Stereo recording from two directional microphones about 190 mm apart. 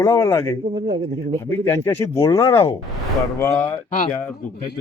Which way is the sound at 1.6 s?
15° left (ahead or behind).